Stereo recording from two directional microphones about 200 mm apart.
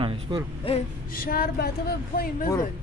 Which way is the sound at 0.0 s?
25° right (ahead or behind).